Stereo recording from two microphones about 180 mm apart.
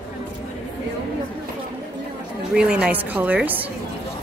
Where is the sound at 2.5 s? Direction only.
5° right (ahead or behind).